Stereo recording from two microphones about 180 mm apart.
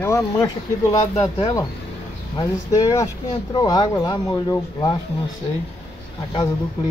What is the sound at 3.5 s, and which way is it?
Speech, 20° left (ahead or behind).